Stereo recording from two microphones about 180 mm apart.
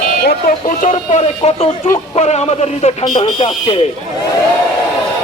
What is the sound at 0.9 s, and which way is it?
Speech, 35° left (ahead or behind).